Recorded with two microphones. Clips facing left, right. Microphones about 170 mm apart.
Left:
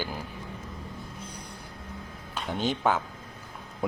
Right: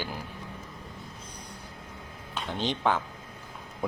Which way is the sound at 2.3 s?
5° left (ahead or behind).